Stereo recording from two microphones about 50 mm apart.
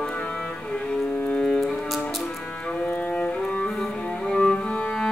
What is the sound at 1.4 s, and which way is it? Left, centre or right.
Music, centre.